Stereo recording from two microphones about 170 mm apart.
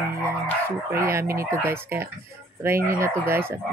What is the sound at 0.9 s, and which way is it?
Speech, 15° right (ahead or behind).